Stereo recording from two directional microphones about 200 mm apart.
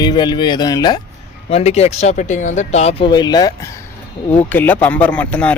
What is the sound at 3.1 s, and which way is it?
Speech, 20° left (ahead or behind).